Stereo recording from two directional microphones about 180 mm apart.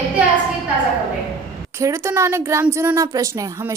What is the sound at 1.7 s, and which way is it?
A woman's voice, 15° right (ahead or behind).